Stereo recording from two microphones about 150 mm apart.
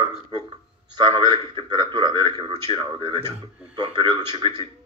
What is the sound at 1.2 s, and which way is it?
Speech, 30° right (ahead or behind).